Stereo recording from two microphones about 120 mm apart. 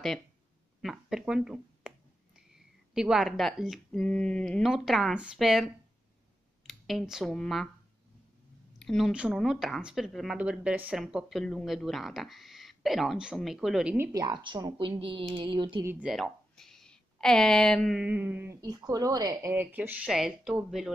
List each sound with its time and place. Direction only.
0.8 s speech: 5° right (ahead or behind)
8.7 s a woman's voice: 5° left (ahead or behind)
13.9 s a woman's voice: 25° right (ahead or behind)
14.4 s speech: 40° right (ahead or behind)
16.0 s speech: centre (ahead or behind)
17.9 s a sound: 10° right (ahead or behind)
18.6 s speech: 30° right (ahead or behind)
19.5 s a sound: 15° right (ahead or behind)
20.1 s speech: 5° right (ahead or behind)